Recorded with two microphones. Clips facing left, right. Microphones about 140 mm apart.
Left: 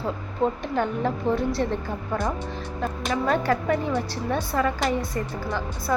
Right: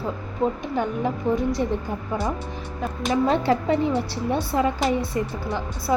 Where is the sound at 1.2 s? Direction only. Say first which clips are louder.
Right 1 dB; 20° left (ahead or behind).